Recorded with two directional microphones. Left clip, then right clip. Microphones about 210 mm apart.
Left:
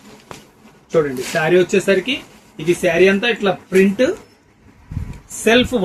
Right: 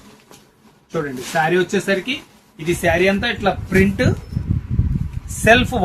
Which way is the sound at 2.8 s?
30° right (ahead or behind).